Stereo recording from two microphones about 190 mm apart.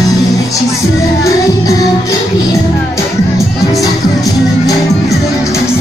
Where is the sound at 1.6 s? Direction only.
20° left (ahead or behind).